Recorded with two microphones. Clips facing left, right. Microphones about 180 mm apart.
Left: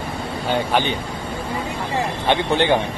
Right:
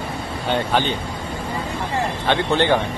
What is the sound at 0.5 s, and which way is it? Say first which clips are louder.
Speech: even; 15° left (ahead or behind).